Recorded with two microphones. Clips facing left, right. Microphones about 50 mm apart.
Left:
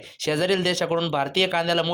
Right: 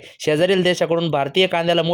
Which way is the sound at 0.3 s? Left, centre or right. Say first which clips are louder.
Right 6 dB; right.